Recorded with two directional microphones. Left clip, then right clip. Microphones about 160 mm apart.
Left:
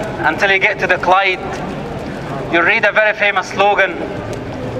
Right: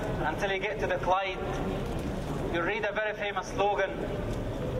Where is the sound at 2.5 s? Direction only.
15° left (ahead or behind).